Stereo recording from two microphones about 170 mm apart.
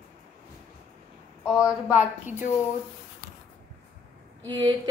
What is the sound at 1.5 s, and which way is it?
Speech, 5° right (ahead or behind).